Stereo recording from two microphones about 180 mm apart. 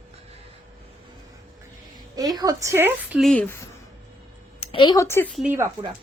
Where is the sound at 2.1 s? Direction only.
20° right (ahead or behind).